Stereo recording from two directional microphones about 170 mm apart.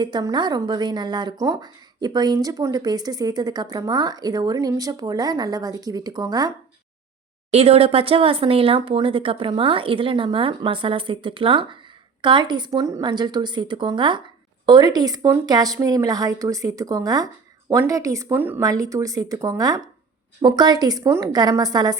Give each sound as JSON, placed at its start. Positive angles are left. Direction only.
{"t": 0.0, "sound": "speech", "side_deg": -25}
{"t": 7.5, "sound": "speech", "side_deg": -35}